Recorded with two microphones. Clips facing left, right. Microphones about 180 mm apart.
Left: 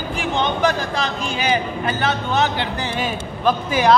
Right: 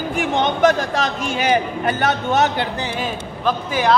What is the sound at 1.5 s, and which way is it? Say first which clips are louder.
Speech: right 3 dB; 55° right (ahead or behind).